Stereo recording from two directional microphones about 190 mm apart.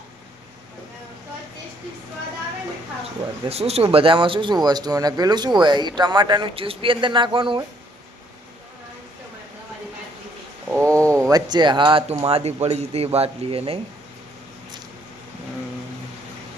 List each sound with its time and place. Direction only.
3.5 s speech: 35° right (ahead or behind)
10.7 s a sound: 10° right (ahead or behind)
11.1 s speech: 15° right (ahead or behind)